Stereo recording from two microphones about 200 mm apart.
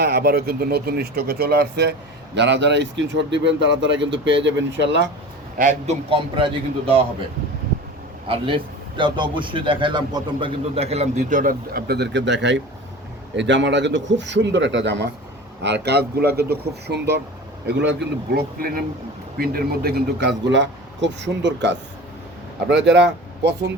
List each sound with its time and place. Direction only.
0.0 s speech: 50° right (ahead or behind)
5.5 s a man's voice: 35° right (ahead or behind)
8.3 s a man's voice: 25° right (ahead or behind); by 23.7 s 55° right (ahead or behind)